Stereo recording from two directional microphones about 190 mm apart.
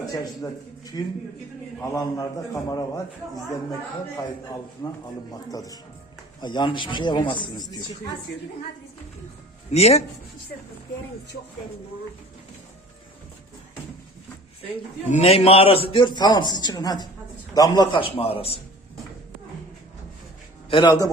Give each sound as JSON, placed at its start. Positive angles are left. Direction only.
{"t": 0.0, "sound": "a man's voice", "side_deg": 20}
{"t": 5.3, "sound": "a man's voice", "side_deg": 20}
{"t": 9.7, "sound": "a man's voice", "side_deg": 35}
{"t": 15.1, "sound": "a man's voice", "side_deg": 35}
{"t": 20.7, "sound": "a man's voice", "side_deg": 25}